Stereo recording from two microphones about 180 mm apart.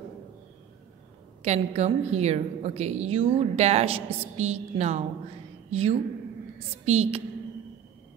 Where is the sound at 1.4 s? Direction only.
40° right (ahead or behind).